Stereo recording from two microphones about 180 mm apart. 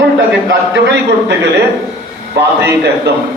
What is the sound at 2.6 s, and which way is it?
Speech, 65° right (ahead or behind).